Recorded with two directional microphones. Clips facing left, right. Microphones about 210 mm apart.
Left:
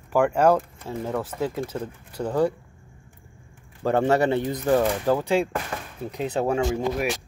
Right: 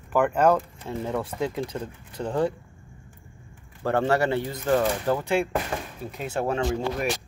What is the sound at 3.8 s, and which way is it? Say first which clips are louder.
Speech: left 2 dB; 15° left (ahead or behind).